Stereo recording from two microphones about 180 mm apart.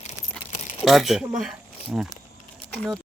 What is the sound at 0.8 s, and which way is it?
Speech, centre (ahead or behind).